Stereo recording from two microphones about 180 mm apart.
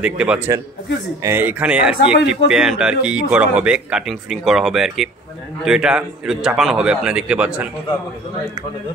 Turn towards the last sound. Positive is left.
turn(degrees=-5)  # may be behind; listen again after turning